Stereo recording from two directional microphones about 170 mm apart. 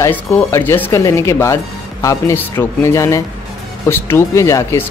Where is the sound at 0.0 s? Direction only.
15° left (ahead or behind).